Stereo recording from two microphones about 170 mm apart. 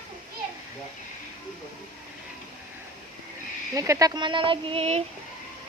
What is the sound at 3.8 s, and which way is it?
Speech, 20° right (ahead or behind).